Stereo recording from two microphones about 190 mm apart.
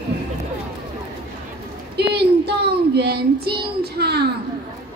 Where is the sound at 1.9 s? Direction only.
60° right (ahead or behind).